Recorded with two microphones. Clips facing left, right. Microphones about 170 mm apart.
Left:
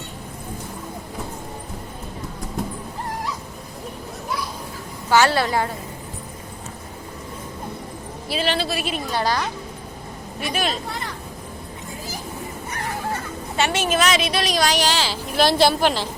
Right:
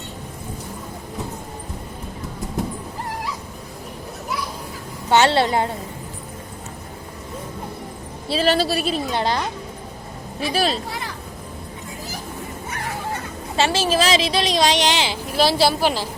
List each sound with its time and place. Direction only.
5.0 s a woman's voice: 25° right (ahead or behind)
8.3 s a woman's voice: 40° right (ahead or behind)
9.1 s a woman's voice: 25° right (ahead or behind)
10.5 s a woman's voice: 35° right (ahead or behind)
13.6 s a woman's voice: 30° right (ahead or behind)
15.4 s a woman's voice: 5° right (ahead or behind)